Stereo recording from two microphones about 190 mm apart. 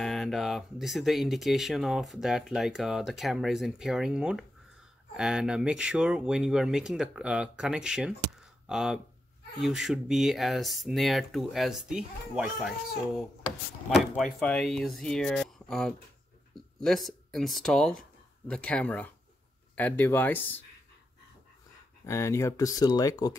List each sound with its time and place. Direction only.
0.0 s speech: centre (ahead or behind)
13.8 s speech: centre (ahead or behind)
22.0 s speech: 15° left (ahead or behind)